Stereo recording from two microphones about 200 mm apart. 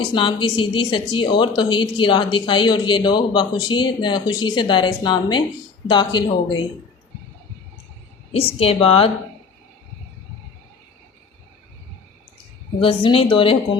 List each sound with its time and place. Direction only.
0.1 s a woman's voice: 25° left (ahead or behind)
8.3 s a woman's voice: 30° left (ahead or behind)
12.8 s a woman's voice: 25° left (ahead or behind)